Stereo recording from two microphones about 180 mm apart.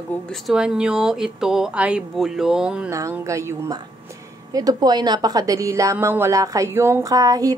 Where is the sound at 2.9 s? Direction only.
15° right (ahead or behind).